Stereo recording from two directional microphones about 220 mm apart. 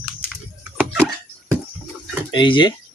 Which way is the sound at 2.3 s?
20° left (ahead or behind).